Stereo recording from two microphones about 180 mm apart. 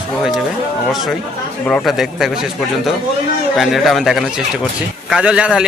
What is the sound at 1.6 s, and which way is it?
Speech, 5° left (ahead or behind).